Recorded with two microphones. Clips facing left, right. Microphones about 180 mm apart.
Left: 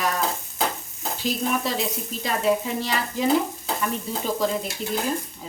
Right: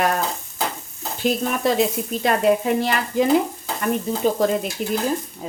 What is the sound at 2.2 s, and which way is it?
Speech, 60° right (ahead or behind).